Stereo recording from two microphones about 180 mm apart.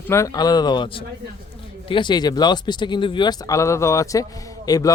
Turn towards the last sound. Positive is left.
turn(degrees=20)  # may be behind; listen again after turning